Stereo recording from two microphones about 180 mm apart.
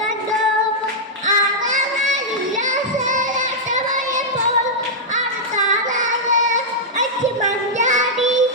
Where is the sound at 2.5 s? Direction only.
45° right (ahead or behind).